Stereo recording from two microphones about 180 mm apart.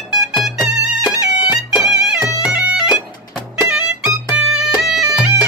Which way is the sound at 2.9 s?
25° left (ahead or behind).